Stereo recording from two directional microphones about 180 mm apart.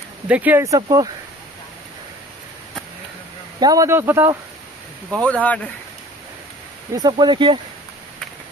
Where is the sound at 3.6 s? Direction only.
20° right (ahead or behind).